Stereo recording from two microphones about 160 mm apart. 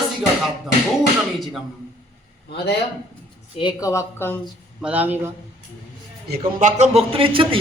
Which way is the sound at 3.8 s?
20° left (ahead or behind).